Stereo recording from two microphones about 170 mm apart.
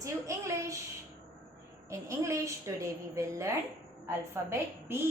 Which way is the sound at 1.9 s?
15° right (ahead or behind).